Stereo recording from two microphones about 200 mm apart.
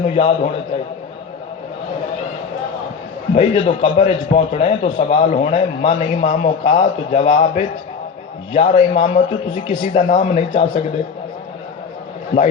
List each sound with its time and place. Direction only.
0.0 s a man's voice: 35° left (ahead or behind)
3.3 s a man's voice: 30° left (ahead or behind)
6.7 s a man's voice: 25° left (ahead or behind)
7.3 s a man's voice: 40° left (ahead or behind)
8.6 s a man's voice: 35° left (ahead or behind)